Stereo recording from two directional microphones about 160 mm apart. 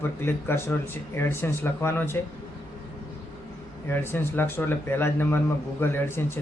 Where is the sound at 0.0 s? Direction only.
15° left (ahead or behind).